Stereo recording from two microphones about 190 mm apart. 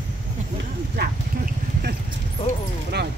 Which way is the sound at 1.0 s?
60° right (ahead or behind).